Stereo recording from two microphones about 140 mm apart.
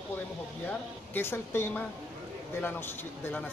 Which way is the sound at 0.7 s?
15° left (ahead or behind).